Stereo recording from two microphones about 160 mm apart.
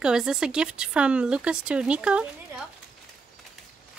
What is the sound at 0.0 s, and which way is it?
Speech, 5° right (ahead or behind).